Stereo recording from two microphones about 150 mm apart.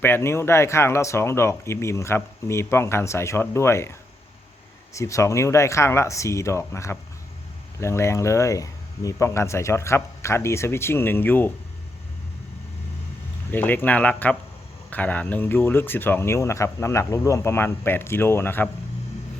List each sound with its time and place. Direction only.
0.0 s speech: 15° left (ahead or behind)
4.9 s speech: 20° left (ahead or behind)
13.5 s speech: 15° left (ahead or behind)